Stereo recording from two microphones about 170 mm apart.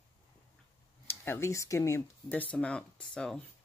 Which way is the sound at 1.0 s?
15° left (ahead or behind).